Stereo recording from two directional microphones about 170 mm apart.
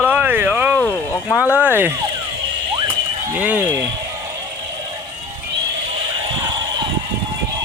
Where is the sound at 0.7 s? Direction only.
10° left (ahead or behind).